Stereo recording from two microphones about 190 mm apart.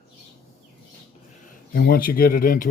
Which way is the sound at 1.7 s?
55° left (ahead or behind).